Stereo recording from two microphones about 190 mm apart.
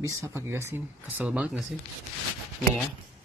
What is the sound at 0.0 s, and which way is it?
Speech, 15° right (ahead or behind).